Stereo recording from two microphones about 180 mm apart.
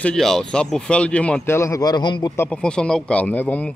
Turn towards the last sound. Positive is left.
turn(degrees=10)  # may be behind; listen again after turning